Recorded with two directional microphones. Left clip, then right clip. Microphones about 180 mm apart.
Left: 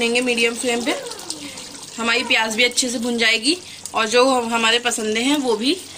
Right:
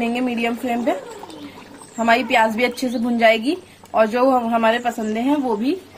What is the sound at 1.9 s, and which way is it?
Speech, 45° right (ahead or behind).